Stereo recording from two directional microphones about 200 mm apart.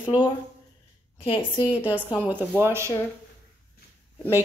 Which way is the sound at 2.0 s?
10° left (ahead or behind).